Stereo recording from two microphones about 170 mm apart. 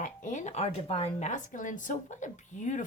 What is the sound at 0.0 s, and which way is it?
Speech, 50° left (ahead or behind).